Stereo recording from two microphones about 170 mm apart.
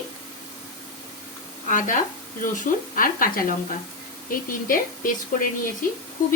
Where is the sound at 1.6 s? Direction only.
50° left (ahead or behind).